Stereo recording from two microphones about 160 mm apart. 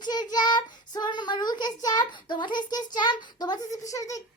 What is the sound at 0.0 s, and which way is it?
Child singing, 25° left (ahead or behind).